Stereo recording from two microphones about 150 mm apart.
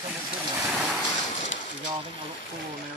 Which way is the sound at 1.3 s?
55° left (ahead or behind).